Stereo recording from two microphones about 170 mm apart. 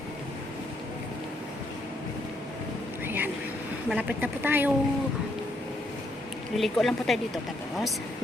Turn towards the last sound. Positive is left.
turn(degrees=0)  # may be behind; listen again after turning